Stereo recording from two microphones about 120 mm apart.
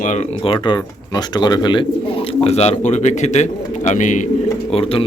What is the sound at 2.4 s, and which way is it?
Speech, 60° left (ahead or behind).